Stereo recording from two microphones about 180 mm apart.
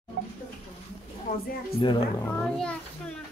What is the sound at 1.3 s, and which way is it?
Speech, 55° left (ahead or behind).